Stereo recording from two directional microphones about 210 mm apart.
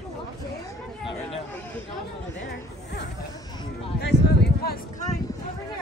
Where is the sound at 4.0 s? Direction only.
55° left (ahead or behind).